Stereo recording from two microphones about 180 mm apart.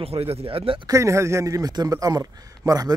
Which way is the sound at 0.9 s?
15° right (ahead or behind).